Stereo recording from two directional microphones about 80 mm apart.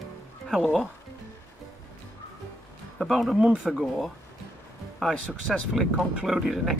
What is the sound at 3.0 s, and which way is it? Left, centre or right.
Speech, centre.